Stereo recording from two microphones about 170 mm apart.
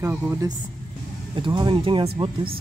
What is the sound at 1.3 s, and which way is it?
Speech, 30° right (ahead or behind).